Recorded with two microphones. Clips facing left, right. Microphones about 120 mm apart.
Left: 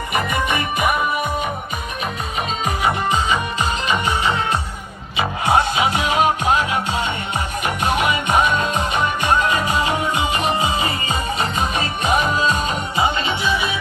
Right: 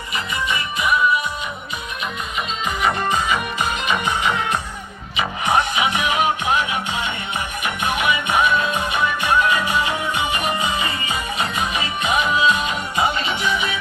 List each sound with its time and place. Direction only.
0.1 s music: 55° left (ahead or behind)
3.0 s music: 20° left (ahead or behind); by 6.8 s 35° left (ahead or behind)
8.5 s music: 25° left (ahead or behind)